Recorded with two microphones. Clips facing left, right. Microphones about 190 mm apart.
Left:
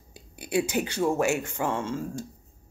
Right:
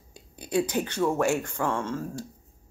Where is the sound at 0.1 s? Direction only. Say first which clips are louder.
Even; 10° left (ahead or behind).